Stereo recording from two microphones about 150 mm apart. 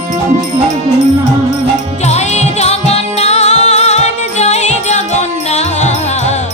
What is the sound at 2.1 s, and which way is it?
Music, 50° left (ahead or behind).